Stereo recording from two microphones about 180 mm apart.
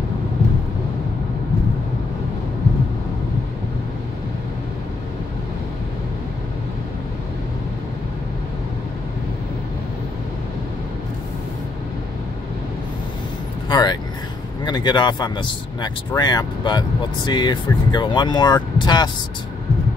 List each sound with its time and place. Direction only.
13.7 s vehicle: 25° left (ahead or behind)
14.6 s speech: 25° left (ahead or behind)